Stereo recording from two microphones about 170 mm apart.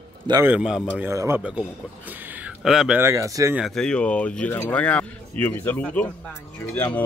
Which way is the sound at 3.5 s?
Centre (ahead or behind).